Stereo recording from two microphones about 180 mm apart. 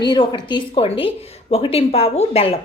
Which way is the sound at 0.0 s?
25° left (ahead or behind).